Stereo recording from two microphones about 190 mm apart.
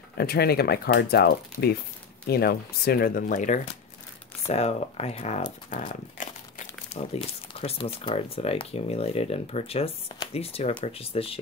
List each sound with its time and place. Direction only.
0.2 s speech: 55° left (ahead or behind)
6.9 s speech: 30° left (ahead or behind)